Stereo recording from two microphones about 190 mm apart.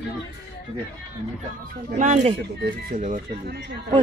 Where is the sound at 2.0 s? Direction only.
40° right (ahead or behind).